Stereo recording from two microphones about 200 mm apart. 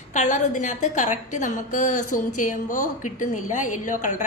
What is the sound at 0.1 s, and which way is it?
A woman's voice, 35° left (ahead or behind).